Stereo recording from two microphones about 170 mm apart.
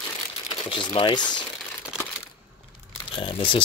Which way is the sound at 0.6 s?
30° left (ahead or behind).